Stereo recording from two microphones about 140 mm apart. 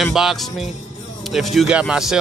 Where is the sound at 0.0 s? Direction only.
Centre (ahead or behind).